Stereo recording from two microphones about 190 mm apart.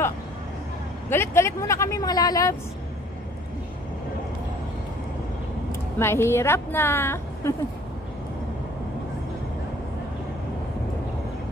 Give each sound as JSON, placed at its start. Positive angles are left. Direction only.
{"t": 1.0, "sound": "speech", "side_deg": 10}
{"t": 5.7, "sound": "a woman's voice", "side_deg": 15}